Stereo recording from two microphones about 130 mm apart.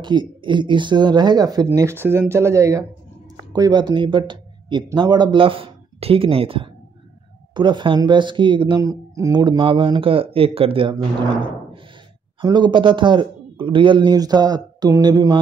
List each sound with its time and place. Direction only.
0.0 s a man's voice: 35° right (ahead or behind)
1.7 s a man's voice: 20° right (ahead or behind); by 8.8 s 40° right (ahead or behind)
8.8 s a man's voice: 25° right (ahead or behind); by 11.1 s 40° right (ahead or behind)
12.4 s a man's voice: 35° right (ahead or behind)